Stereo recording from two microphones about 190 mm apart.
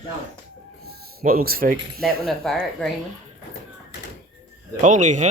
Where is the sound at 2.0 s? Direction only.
Centre (ahead or behind).